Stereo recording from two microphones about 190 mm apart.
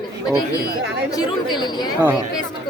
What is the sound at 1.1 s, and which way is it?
Speech, 20° left (ahead or behind).